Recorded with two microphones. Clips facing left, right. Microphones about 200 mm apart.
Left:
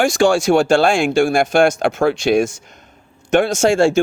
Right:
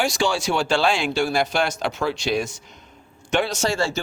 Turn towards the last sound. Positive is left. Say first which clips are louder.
# left 10 dB
turn(degrees=50)  # may be behind; listen again after turning